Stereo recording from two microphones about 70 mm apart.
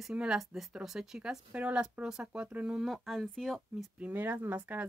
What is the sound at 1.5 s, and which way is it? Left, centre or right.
Speech, centre.